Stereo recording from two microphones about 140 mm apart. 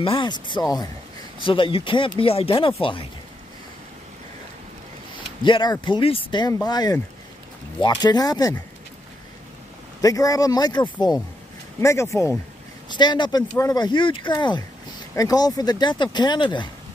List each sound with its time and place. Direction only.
0.0 s speech: 35° left (ahead or behind)
1.4 s speech: 40° left (ahead or behind)
5.4 s speech: 35° left (ahead or behind)
10.0 s speech: 25° left (ahead or behind)
12.9 s speech: 30° left (ahead or behind)